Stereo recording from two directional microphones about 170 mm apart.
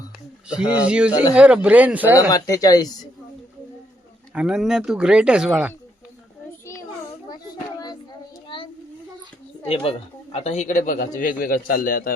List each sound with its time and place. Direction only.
0.4 s speech: 5° right (ahead or behind)
2.3 s speech: 20° left (ahead or behind)
4.4 s speech: 5° right (ahead or behind)
8.4 s a sound: 30° left (ahead or behind)
9.6 s a man's voice: 35° left (ahead or behind); by 12.1 s 55° left (ahead or behind)